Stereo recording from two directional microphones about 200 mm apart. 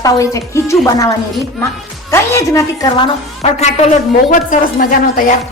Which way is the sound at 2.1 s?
15° left (ahead or behind).